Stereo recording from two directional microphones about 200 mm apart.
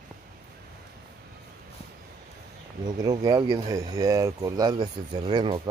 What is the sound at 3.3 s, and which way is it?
Speech, 20° right (ahead or behind).